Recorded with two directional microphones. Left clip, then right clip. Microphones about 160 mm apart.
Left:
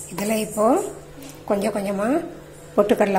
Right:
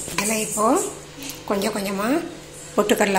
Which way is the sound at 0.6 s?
25° left (ahead or behind).